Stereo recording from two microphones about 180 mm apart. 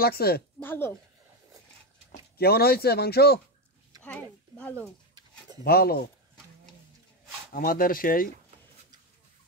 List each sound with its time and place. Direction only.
0.0 s speech: 60° left (ahead or behind)
0.6 s speech: 10° left (ahead or behind)
2.3 s speech: 60° left (ahead or behind)
4.0 s speech: 10° left (ahead or behind)
5.6 s speech: 60° left (ahead or behind)
7.5 s speech: 50° left (ahead or behind)